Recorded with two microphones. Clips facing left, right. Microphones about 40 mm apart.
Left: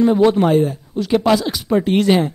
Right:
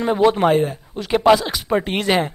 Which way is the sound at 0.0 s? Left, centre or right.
Centre.